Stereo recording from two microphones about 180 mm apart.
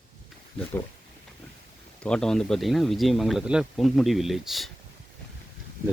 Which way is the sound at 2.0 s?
5° left (ahead or behind).